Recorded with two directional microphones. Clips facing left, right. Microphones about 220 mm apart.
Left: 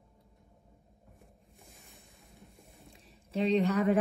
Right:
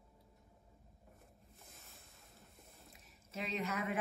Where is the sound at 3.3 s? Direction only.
30° left (ahead or behind).